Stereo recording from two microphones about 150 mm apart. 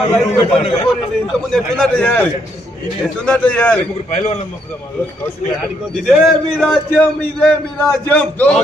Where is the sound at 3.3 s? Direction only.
10° left (ahead or behind).